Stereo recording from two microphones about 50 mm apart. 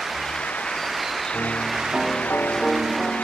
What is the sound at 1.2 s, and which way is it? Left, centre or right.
Music, centre.